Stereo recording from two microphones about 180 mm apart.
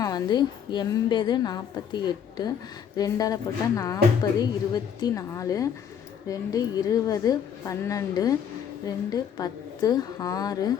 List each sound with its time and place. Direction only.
0.0 s a woman's voice: 25° left (ahead or behind)